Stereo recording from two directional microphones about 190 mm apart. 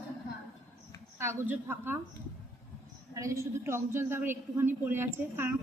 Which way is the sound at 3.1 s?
15° right (ahead or behind).